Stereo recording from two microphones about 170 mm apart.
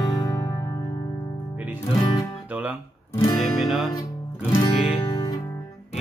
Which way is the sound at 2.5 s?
10° right (ahead or behind).